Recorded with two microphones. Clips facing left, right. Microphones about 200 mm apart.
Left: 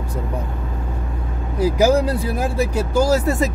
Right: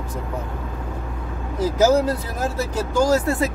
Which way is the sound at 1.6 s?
10° left (ahead or behind).